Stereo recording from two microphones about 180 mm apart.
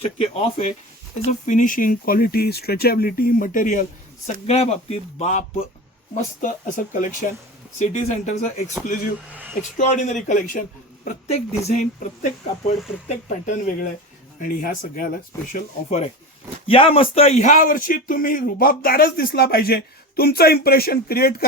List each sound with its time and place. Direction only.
0.0 s speech: 35° left (ahead or behind)
9.3 s speech: 10° right (ahead or behind)
9.7 s speech: 45° left (ahead or behind)
16.6 s a man's voice: 30° left (ahead or behind); by 21.4 s 55° left (ahead or behind)